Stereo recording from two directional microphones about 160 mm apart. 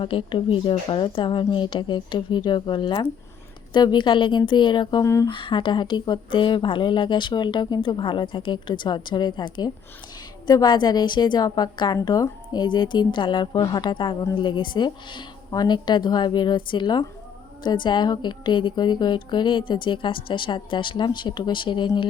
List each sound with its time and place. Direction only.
0.0 s a woman's voice: 35° left (ahead or behind)